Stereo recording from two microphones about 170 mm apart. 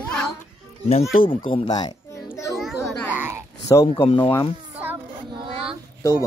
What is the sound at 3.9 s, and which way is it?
Speech, 25° left (ahead or behind).